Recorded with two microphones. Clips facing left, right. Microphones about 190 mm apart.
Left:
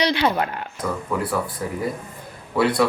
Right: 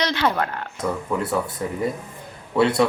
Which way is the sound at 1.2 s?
25° right (ahead or behind).